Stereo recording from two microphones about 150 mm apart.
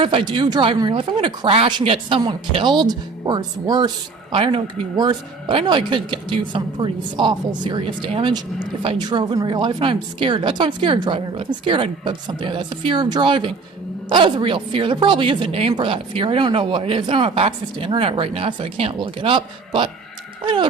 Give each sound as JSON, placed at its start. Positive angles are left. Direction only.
{"t": 0.0, "sound": "speech", "side_deg": -30}